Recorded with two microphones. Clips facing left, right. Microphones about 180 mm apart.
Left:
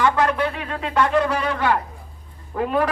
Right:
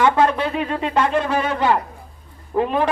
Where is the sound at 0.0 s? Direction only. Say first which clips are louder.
Right 2 dB; 25° right (ahead or behind).